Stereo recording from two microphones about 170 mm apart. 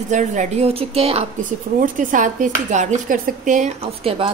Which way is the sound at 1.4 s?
50° right (ahead or behind).